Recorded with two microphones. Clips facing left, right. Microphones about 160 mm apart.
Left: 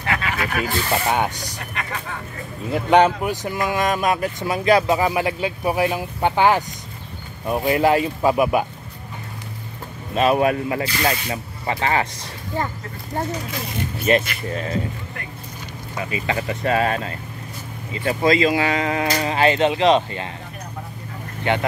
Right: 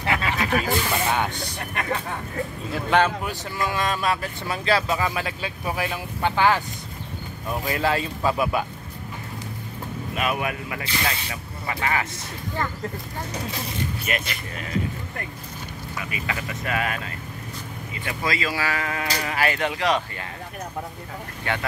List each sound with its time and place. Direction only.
0.0 s snake: 25° right (ahead or behind)
2.7 s speech: 20° left (ahead or behind)
10.1 s speech: 30° left (ahead or behind)
14.1 s speech: 30° left (ahead or behind)
16.0 s speech: 30° left (ahead or behind)
21.5 s speech: 20° left (ahead or behind)